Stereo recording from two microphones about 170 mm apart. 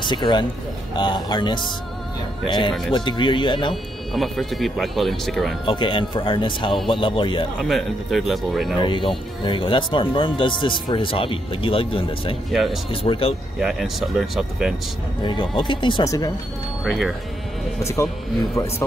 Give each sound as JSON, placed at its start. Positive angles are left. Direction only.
{"t": 0.0, "sound": "speech", "side_deg": 25}
{"t": 4.1, "sound": "speech", "side_deg": 0}
{"t": 5.7, "sound": "speech", "side_deg": 30}
{"t": 7.6, "sound": "speech", "side_deg": 0}
{"t": 8.8, "sound": "speech", "side_deg": 30}
{"t": 12.4, "sound": "speech", "side_deg": 0}
{"t": 12.9, "sound": "speech", "side_deg": 30}
{"t": 13.6, "sound": "speech", "side_deg": 0}
{"t": 15.2, "sound": "speech", "side_deg": 30}
{"t": 16.8, "sound": "speech", "side_deg": 0}